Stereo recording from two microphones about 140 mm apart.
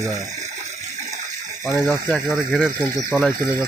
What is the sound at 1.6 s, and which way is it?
Speech, centre (ahead or behind).